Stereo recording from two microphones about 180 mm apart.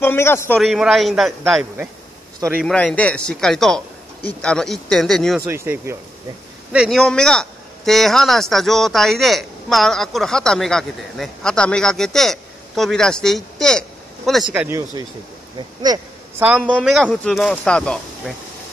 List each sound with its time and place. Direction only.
0.0 s a man's voice: 15° left (ahead or behind)
0.6 s speech: centre (ahead or behind)
5.5 s speech: 15° right (ahead or behind)
6.7 s speech: centre (ahead or behind)
14.5 s speech: 15° right (ahead or behind)
15.8 s a sound: 20° right (ahead or behind)
16.7 s speech: centre (ahead or behind)